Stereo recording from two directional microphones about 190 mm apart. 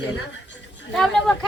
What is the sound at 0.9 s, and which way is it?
Speech, centre (ahead or behind).